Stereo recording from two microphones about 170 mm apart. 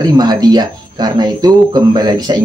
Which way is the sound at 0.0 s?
25° right (ahead or behind).